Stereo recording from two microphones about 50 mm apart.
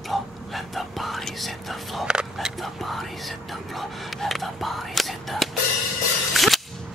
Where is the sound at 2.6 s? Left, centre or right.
Centre.